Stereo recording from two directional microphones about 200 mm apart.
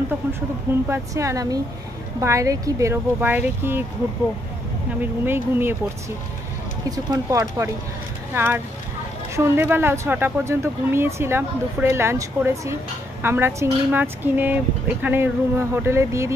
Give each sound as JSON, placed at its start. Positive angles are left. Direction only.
{"t": 0.8, "sound": "speech", "side_deg": -15}
{"t": 5.0, "sound": "speech", "side_deg": -10}
{"t": 7.1, "sound": "speech", "side_deg": -15}